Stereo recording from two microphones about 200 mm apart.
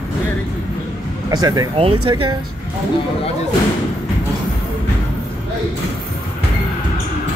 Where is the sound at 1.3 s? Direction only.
20° right (ahead or behind).